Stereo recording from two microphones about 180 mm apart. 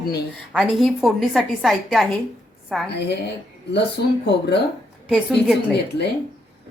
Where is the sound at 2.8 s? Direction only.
70° left (ahead or behind).